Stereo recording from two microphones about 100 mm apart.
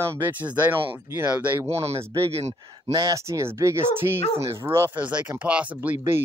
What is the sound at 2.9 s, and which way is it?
Speech, 35° right (ahead or behind).